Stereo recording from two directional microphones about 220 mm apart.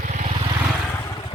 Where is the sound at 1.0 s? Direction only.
20° left (ahead or behind).